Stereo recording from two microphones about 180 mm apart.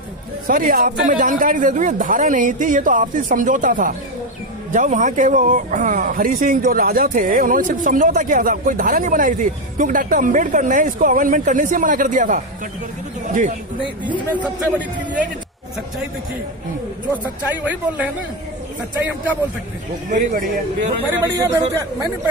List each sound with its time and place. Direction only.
0.5 s speech: 50° right (ahead or behind)
17.4 s a man's voice: 10° right (ahead or behind)
20.1 s speech: 45° right (ahead or behind)
21.1 s a man's voice: 15° right (ahead or behind)